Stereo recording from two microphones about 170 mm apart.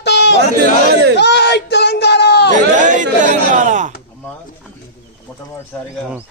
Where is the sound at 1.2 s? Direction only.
90° left.